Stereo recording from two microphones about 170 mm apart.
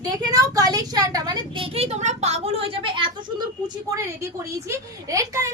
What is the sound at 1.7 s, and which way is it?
A woman's voice, 40° right (ahead or behind).